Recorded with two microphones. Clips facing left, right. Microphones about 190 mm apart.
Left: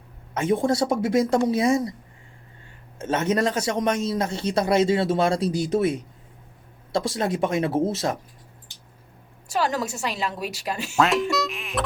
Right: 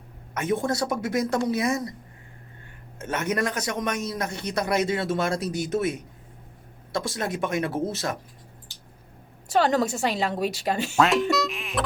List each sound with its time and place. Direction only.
0.6 s a man's voice: 30° left (ahead or behind)
3.0 s a man's voice: 25° left (ahead or behind)
9.5 s a woman's voice: 55° right (ahead or behind)
10.9 s speech: centre (ahead or behind)